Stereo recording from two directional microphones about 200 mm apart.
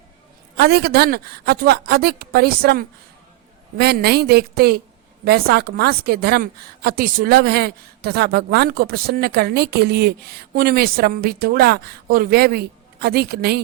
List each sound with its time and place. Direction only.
0.5 s a woman's voice: 50° right (ahead or behind)